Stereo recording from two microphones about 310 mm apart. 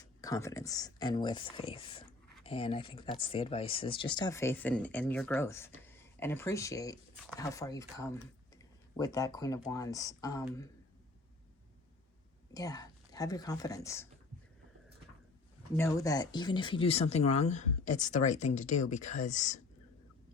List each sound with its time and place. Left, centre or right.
0.0 s speech: centre
12.5 s speech: centre
15.7 s speech: centre